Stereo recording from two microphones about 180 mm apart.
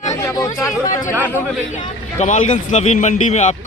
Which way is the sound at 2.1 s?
40° left (ahead or behind).